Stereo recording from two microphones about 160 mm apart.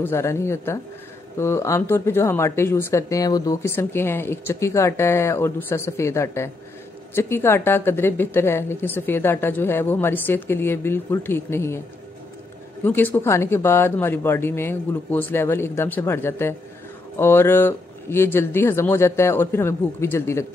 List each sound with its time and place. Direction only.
0.0 s speech: 15° left (ahead or behind)
12.8 s speech: 15° left (ahead or behind)